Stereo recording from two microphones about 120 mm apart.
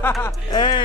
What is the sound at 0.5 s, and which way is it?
Speech, 40° left (ahead or behind).